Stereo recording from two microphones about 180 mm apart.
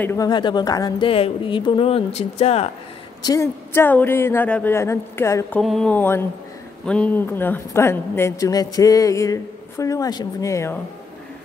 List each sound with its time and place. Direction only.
0.0 s speech: 15° left (ahead or behind); by 2.7 s 35° left (ahead or behind)
3.2 s a woman's voice: 20° left (ahead or behind)
5.6 s a woman's voice: centre (ahead or behind)